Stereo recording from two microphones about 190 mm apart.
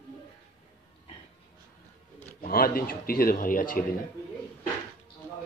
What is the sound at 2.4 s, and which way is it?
A man's voice, 50° left (ahead or behind).